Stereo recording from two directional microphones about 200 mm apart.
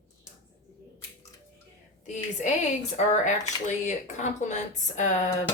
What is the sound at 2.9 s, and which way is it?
Speech, 35° left (ahead or behind).